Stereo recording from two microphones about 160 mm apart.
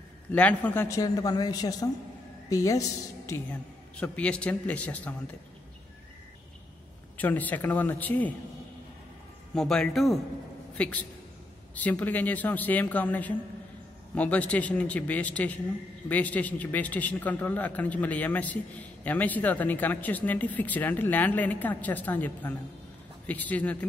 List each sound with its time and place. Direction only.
0.3 s a woman's voice: 10° left (ahead or behind)
3.9 s a man's voice: 10° left (ahead or behind)
7.2 s a man's voice: 10° left (ahead or behind)
9.5 s speech: 5° left (ahead or behind)
10.7 s a sound: 10° left (ahead or behind)
11.7 s a man's voice: 10° left (ahead or behind)